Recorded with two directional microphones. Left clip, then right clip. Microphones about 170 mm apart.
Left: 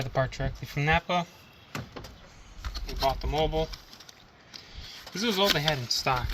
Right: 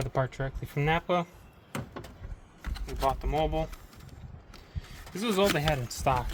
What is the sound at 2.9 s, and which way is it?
Speech, 35° right (ahead or behind).